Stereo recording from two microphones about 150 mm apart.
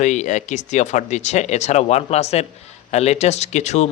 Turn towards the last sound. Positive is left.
turn(degrees=50)  # may be behind; listen again after turning